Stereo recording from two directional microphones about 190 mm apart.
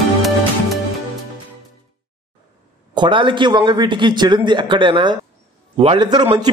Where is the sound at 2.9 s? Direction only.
25° right (ahead or behind).